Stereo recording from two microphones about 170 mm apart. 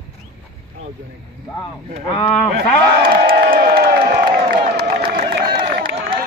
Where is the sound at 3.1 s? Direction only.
60° right (ahead or behind).